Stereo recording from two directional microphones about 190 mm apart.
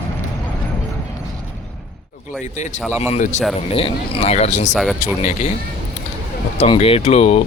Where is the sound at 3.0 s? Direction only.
35° left (ahead or behind).